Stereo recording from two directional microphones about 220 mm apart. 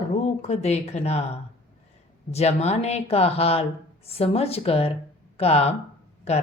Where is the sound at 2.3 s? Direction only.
30° left (ahead or behind).